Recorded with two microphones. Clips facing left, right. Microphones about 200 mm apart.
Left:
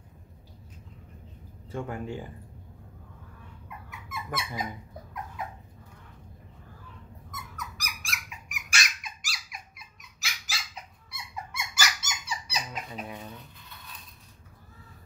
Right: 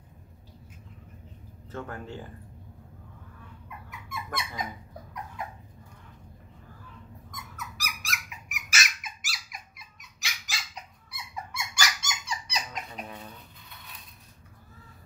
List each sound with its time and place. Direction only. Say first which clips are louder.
1.7 s speech: left 3 dB; 10° left (ahead or behind)
3.6 s a sound: left 1 dB; centre (ahead or behind)
7.2 s squeak: left 2 dB; centre (ahead or behind)